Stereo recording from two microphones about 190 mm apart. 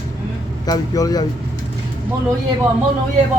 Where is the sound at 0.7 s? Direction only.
20° left (ahead or behind).